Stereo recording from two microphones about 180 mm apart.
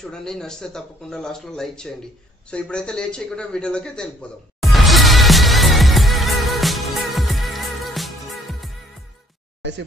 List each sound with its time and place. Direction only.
0.0 s speech: 5° left (ahead or behind)
4.6 s music: centre (ahead or behind)
9.6 s a sound: 75° right (ahead or behind)